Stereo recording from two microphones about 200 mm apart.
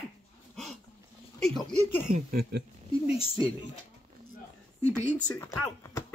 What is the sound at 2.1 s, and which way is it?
Speech, 45° right (ahead or behind).